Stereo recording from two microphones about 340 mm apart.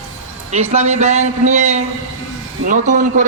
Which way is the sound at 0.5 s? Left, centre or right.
Centre.